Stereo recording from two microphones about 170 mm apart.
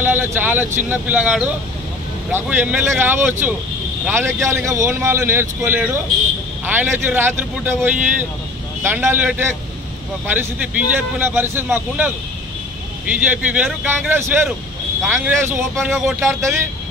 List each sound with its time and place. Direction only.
0.0 s speech: 10° right (ahead or behind)